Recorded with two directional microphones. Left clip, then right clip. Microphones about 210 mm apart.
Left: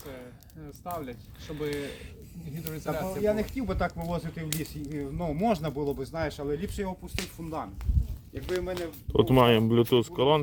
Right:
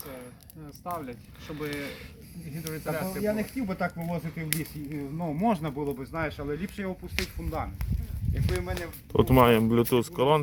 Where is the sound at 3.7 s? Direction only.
10° right (ahead or behind).